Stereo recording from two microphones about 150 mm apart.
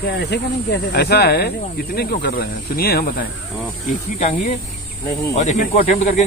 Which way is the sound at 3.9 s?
60° left (ahead or behind).